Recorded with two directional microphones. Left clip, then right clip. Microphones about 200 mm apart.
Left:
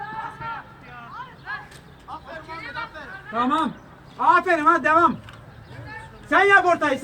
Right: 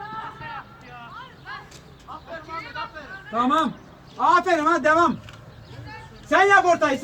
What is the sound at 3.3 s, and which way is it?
A man's voice, 30° right (ahead or behind).